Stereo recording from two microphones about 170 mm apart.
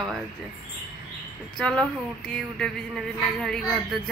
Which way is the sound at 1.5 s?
5° left (ahead or behind).